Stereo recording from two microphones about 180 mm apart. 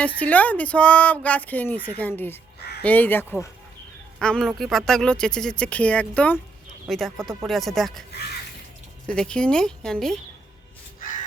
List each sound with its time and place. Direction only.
0.0 s speech: 10° left (ahead or behind)
9.0 s speech: 5° left (ahead or behind)
11.0 s crow: 45° left (ahead or behind)